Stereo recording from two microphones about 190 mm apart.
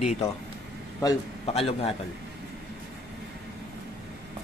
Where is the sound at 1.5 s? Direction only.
30° left (ahead or behind).